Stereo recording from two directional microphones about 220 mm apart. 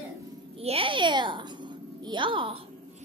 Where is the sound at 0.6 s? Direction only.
25° right (ahead or behind).